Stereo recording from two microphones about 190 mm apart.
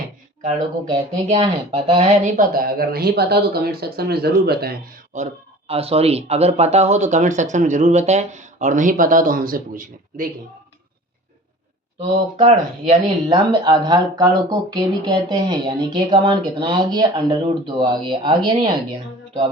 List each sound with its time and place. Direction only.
1.3 s speech: 30° right (ahead or behind); by 4.8 s 55° right (ahead or behind)
5.1 s speech: 35° right (ahead or behind)
11.9 s speech: 35° right (ahead or behind)